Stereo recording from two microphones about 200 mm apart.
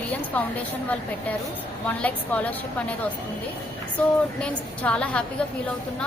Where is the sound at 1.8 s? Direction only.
5° left (ahead or behind).